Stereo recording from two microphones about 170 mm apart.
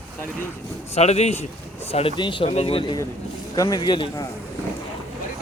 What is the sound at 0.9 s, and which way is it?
Speech, 40° left (ahead or behind).